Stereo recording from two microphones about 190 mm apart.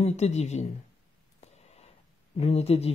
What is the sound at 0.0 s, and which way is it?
Speech, 35° left (ahead or behind).